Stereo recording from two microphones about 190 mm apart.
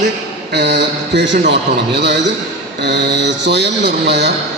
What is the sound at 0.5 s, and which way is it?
A man's voice, 65° right (ahead or behind).